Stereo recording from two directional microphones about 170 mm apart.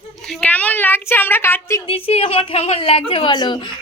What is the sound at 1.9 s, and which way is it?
A woman's voice, 35° left (ahead or behind).